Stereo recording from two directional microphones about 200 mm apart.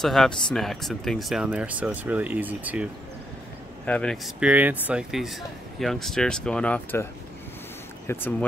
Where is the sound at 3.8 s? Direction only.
5° left (ahead or behind).